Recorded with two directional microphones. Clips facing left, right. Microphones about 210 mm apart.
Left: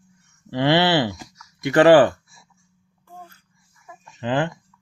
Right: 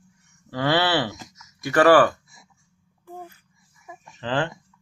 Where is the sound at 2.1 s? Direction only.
20° right (ahead or behind).